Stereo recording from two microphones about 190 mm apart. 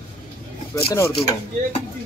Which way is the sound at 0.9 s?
15° left (ahead or behind).